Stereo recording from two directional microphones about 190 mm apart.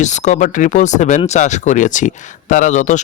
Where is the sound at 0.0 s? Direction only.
40° left (ahead or behind).